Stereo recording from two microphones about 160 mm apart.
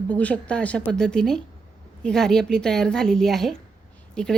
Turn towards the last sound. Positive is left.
turn(degrees=5)  # may be behind; listen again after turning